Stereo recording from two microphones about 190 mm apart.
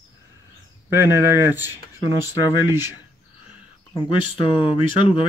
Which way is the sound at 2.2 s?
20° left (ahead or behind).